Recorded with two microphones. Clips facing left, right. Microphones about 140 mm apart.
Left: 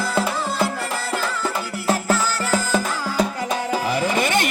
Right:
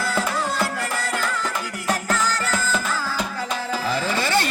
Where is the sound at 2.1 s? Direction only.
15° left (ahead or behind).